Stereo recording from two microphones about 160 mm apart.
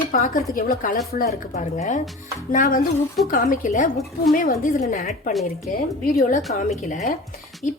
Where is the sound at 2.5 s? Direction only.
60° left (ahead or behind).